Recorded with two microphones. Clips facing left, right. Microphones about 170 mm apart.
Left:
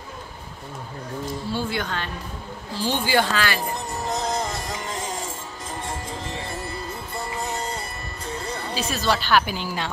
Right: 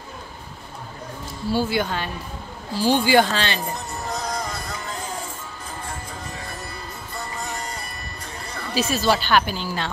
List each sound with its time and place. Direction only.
1.5 s speech: 10° right (ahead or behind)
3.3 s speech: 25° right (ahead or behind)
3.6 s music: 20° left (ahead or behind)
6.2 s music: 25° left (ahead or behind)
7.5 s music: 25° left (ahead or behind)
8.7 s speech: 5° right (ahead or behind)
9.5 s speech: 10° left (ahead or behind)